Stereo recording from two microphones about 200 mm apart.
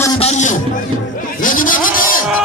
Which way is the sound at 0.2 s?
35° left (ahead or behind).